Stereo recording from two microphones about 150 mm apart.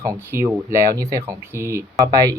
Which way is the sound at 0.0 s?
15° right (ahead or behind).